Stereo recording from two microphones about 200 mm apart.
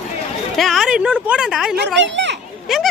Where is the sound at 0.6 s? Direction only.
Centre (ahead or behind).